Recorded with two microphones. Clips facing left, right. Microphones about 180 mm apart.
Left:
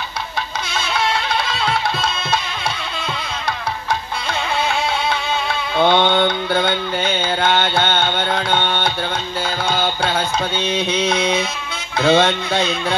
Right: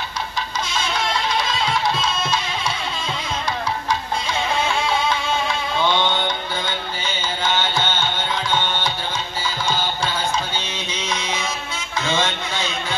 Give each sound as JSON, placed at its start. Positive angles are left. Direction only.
{"t": 0.7, "sound": "music", "side_deg": 60}
{"t": 4.3, "sound": "music", "side_deg": 65}